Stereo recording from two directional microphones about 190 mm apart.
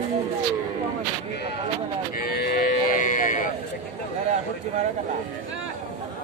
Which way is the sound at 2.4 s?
45° left (ahead or behind).